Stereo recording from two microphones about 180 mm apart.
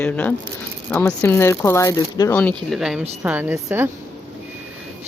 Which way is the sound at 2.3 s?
5° left (ahead or behind).